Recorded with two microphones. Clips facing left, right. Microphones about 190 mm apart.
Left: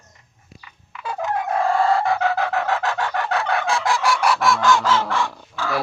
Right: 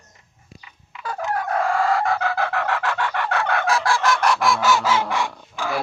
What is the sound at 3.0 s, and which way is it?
Chicken, 35° left (ahead or behind).